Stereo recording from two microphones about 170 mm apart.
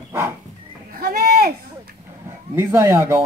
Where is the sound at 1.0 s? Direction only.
60° right (ahead or behind).